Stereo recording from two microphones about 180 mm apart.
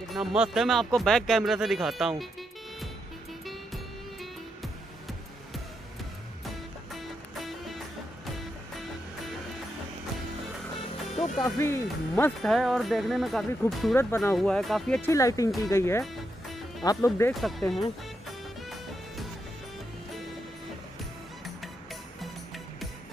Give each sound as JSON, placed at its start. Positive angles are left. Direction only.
{"t": 0.1, "sound": "speech", "side_deg": -5}
{"t": 3.4, "sound": "music", "side_deg": 0}
{"t": 6.4, "sound": "music", "side_deg": 0}
{"t": 11.4, "sound": "speech", "side_deg": 15}
{"t": 12.3, "sound": "speech", "side_deg": 0}
{"t": 13.9, "sound": "speech", "side_deg": 10}
{"t": 17.3, "sound": "speech", "side_deg": 0}